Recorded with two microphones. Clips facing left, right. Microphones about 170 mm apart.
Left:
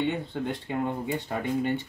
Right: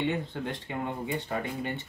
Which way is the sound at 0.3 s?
Centre (ahead or behind).